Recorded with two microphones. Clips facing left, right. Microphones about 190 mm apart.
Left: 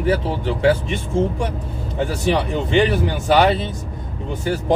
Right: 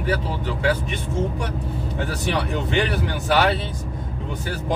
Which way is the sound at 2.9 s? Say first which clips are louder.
Left 5 dB; 20° left (ahead or behind).